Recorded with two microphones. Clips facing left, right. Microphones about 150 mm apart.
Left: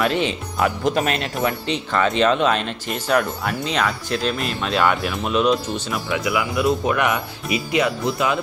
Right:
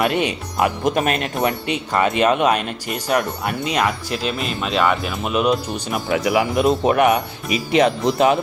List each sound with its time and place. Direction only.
0.0 s speech: 15° right (ahead or behind)
0.9 s speech: 50° right (ahead or behind)
1.4 s speech: 15° right (ahead or behind)
6.2 s speech: 35° right (ahead or behind)